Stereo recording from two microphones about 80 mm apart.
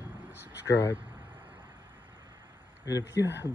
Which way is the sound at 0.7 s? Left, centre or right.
Left.